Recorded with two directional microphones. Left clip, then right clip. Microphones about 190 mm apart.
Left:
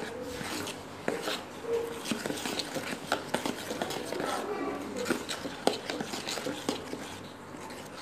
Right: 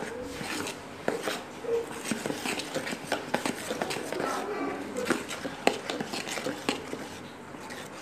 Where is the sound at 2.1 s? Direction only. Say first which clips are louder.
Right 4 dB; 5° left (ahead or behind).